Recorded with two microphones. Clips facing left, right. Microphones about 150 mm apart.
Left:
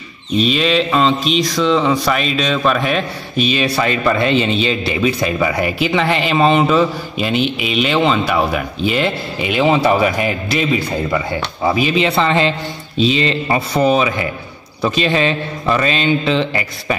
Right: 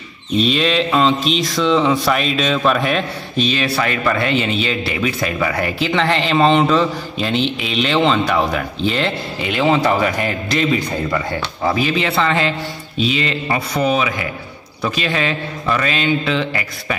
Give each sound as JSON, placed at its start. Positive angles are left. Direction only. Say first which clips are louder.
{"t": 0.4, "sound": "speech", "louder": "left 1 dB", "side_deg": 0}
{"t": 3.4, "sound": "a man's voice", "louder": "left 3 dB", "side_deg": 15}